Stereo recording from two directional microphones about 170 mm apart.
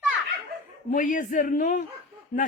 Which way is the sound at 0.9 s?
50° left (ahead or behind).